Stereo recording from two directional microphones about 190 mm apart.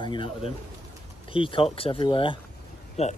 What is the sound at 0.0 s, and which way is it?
Speech, 25° left (ahead or behind).